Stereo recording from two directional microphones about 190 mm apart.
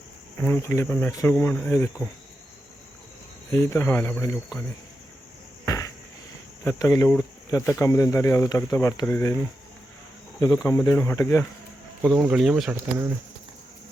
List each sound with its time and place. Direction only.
0.3 s speech: 10° left (ahead or behind)
3.5 s speech: 15° left (ahead or behind)
5.6 s a sound: 15° left (ahead or behind)
6.7 s speech: 15° left (ahead or behind)
10.4 s speech: 15° left (ahead or behind)
12.0 s speech: centre (ahead or behind)